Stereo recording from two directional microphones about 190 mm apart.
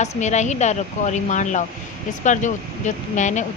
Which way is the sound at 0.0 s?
35° left (ahead or behind).